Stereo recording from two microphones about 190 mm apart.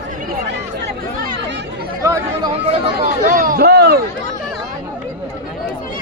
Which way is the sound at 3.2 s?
45° right (ahead or behind).